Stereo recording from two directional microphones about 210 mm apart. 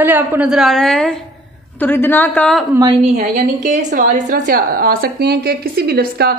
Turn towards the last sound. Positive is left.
turn(degrees=-50)  # may be behind; listen again after turning